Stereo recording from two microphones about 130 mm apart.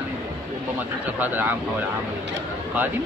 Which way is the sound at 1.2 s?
15° right (ahead or behind).